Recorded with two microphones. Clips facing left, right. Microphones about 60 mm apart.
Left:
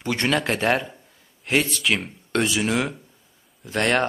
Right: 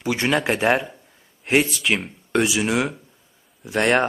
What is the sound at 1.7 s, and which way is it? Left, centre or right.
Speech, centre.